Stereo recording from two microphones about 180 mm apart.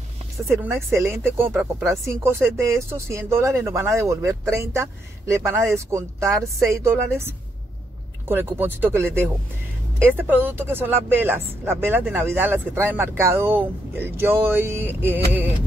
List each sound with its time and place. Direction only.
0.5 s speech: 15° right (ahead or behind)